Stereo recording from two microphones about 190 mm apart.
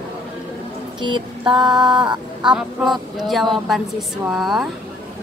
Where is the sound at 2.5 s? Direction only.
Centre (ahead or behind).